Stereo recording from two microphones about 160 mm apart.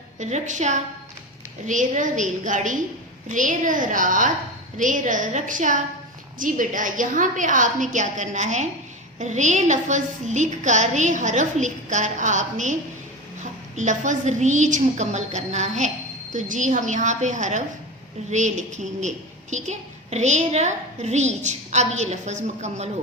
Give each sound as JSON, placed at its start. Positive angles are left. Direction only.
{"t": 0.2, "sound": "a woman's voice", "side_deg": -45}